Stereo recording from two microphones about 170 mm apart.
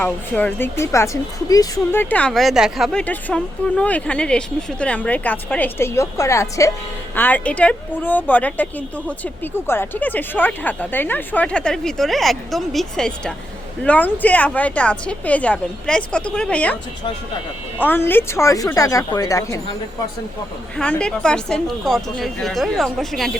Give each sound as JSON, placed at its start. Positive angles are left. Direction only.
{"t": 0.0, "sound": "a woman's voice", "side_deg": 10}
{"t": 17.7, "sound": "a woman's voice", "side_deg": 10}
{"t": 20.7, "sound": "a woman's voice", "side_deg": 5}